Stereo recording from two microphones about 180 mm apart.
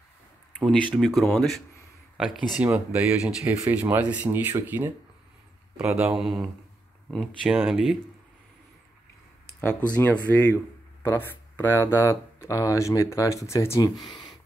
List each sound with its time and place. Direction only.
0.6 s speech: centre (ahead or behind)
6.1 s speech: centre (ahead or behind)
9.6 s speech: 10° left (ahead or behind)
11.0 s speech: 10° left (ahead or behind)